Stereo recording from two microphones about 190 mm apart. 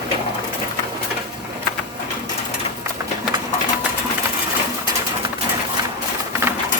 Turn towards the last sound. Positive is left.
turn(degrees=-15)  # may be behind; listen again after turning